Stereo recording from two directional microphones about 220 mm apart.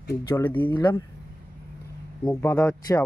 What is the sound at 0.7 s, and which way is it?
Speech, 20° left (ahead or behind).